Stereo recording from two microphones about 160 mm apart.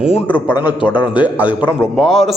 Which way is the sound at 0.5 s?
10° right (ahead or behind).